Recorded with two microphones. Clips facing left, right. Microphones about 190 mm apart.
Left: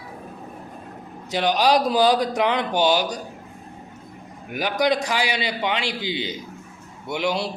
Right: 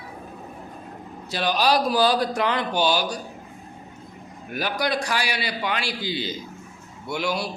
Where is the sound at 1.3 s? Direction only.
15° left (ahead or behind).